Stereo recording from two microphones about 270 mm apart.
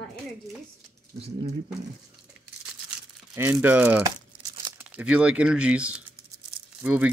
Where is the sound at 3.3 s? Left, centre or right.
Centre.